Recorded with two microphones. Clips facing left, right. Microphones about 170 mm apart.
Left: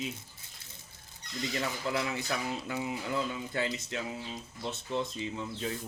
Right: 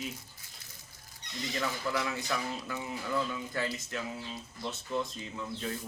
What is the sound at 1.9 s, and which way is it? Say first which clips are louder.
A man's voice: left 2 dB; 25° left (ahead or behind).